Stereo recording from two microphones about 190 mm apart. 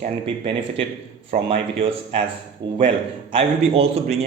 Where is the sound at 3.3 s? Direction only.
30° right (ahead or behind).